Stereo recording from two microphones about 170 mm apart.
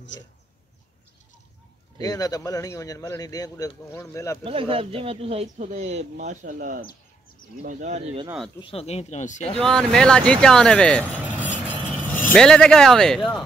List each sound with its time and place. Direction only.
2.0 s a man's voice: 20° left (ahead or behind)
4.5 s speech: 35° right (ahead or behind)
8.5 s speech: 35° left (ahead or behind)
9.6 s speech: 5° left (ahead or behind)
11.1 s vehicle: 10° right (ahead or behind)
11.6 s vehicle: 10° left (ahead or behind)